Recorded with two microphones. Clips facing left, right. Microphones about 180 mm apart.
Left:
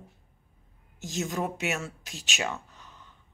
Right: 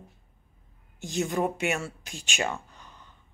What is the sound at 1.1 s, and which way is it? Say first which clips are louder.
Speech: right 4 dB; centre (ahead or behind).